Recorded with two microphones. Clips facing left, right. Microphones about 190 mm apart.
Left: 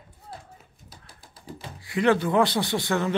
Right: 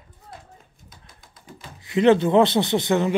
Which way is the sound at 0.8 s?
35° left (ahead or behind).